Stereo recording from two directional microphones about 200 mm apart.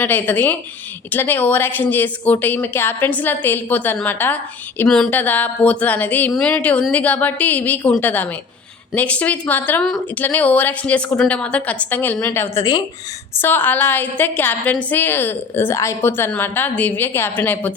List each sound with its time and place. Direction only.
0.0 s a woman's voice: 10° left (ahead or behind)